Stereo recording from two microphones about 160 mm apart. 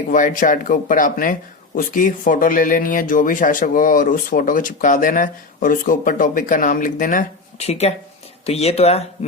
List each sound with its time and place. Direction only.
0.1 s speech: 55° left (ahead or behind)
7.6 s speech: 40° left (ahead or behind)